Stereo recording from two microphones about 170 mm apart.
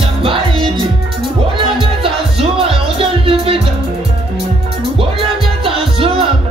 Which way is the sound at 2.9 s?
35° right (ahead or behind).